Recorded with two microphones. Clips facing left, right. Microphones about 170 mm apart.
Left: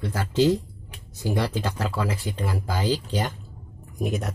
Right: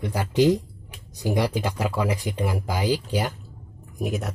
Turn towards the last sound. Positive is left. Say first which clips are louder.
# even
turn(degrees=0)  # may be behind; listen again after turning